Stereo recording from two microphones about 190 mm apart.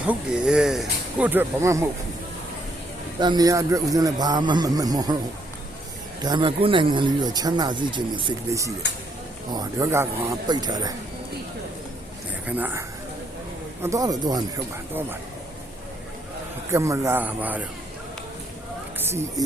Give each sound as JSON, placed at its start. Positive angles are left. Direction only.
{"t": 0.1, "sound": "speech", "side_deg": -5}
{"t": 3.2, "sound": "speech", "side_deg": -20}
{"t": 6.2, "sound": "speech", "side_deg": -25}
{"t": 12.5, "sound": "speech", "side_deg": -10}
{"t": 13.8, "sound": "speech", "side_deg": -20}
{"t": 16.7, "sound": "speech", "side_deg": -15}
{"t": 18.9, "sound": "a sound", "side_deg": -10}